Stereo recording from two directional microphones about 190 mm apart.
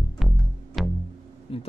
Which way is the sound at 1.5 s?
30° left (ahead or behind).